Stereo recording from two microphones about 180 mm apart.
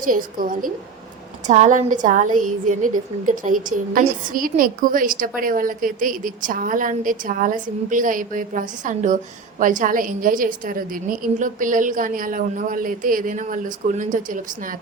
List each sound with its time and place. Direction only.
0.0 s a woman's voice: 50° right (ahead or behind)